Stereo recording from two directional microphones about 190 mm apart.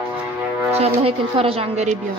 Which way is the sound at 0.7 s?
30° right (ahead or behind).